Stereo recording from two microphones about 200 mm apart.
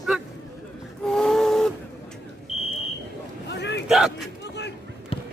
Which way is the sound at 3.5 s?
60° left (ahead or behind).